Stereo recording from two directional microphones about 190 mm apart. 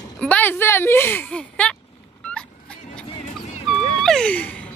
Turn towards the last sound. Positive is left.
turn(degrees=10)  # may be behind; listen again after turning